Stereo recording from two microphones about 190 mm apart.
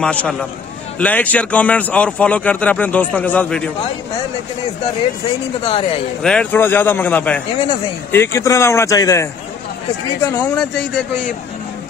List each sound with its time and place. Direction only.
0.0 s a man's voice: 5° left (ahead or behind)
5.6 s speech: 30° left (ahead or behind)
6.2 s speech: 5° left (ahead or behind)